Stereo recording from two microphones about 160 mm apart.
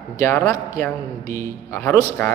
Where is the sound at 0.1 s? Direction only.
20° left (ahead or behind).